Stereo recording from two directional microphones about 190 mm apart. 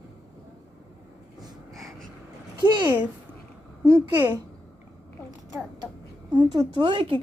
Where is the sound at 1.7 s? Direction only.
Centre (ahead or behind).